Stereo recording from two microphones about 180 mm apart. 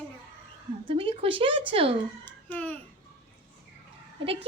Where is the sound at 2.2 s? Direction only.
10° left (ahead or behind).